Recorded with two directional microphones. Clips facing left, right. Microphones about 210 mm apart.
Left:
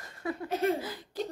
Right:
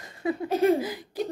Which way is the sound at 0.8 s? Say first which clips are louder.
Right 5 dB; 15° right (ahead or behind).